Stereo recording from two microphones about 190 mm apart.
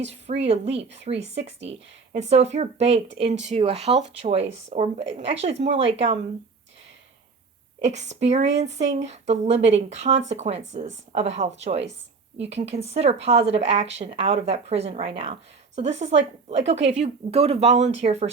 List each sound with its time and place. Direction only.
0.1 s a woman's voice: 35° right (ahead or behind)
7.9 s a woman's voice: 35° right (ahead or behind)